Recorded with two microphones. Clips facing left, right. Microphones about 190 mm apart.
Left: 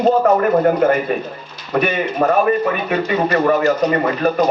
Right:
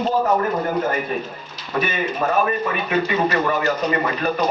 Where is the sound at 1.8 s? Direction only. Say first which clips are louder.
Left 5 dB; 60° left (ahead or behind).